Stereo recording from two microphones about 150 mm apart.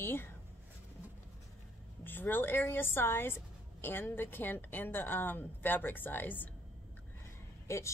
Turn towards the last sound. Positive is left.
turn(degrees=20)  # may be behind; listen again after turning